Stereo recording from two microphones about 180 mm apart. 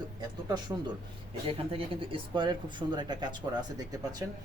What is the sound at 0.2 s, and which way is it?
Speech, 20° right (ahead or behind).